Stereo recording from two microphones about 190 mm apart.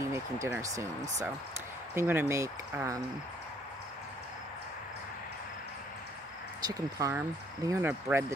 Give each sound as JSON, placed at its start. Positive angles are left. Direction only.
{"t": 0.1, "sound": "speech", "side_deg": -15}
{"t": 2.0, "sound": "speech", "side_deg": -10}
{"t": 6.6, "sound": "speech", "side_deg": -20}